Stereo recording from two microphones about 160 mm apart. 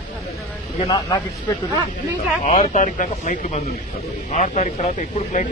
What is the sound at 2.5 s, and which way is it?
Speech, 50° left (ahead or behind).